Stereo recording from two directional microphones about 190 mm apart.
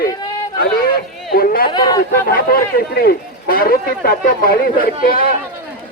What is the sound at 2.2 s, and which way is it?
Speech, 50° left (ahead or behind).